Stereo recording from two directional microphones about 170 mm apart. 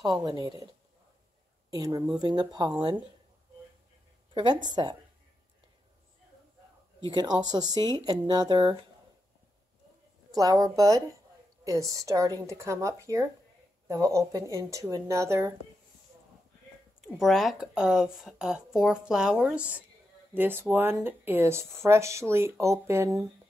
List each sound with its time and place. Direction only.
0.2 s speech: 25° right (ahead or behind)
1.7 s speech: 20° right (ahead or behind)
4.3 s speech: 25° right (ahead or behind)
7.0 s speech: 25° right (ahead or behind)
10.3 s speech: 20° right (ahead or behind)
17.0 s speech: centre (ahead or behind); by 23.2 s 15° right (ahead or behind)